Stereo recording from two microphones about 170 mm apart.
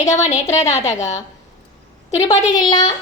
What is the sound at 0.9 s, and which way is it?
Speech, 45° left (ahead or behind).